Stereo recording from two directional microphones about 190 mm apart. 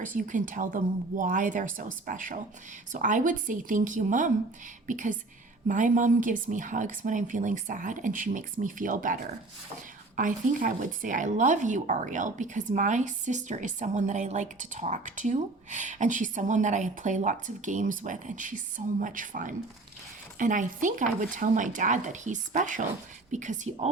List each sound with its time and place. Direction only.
0.0 s speech: 45° right (ahead or behind)
10.2 s speech: 45° right (ahead or behind)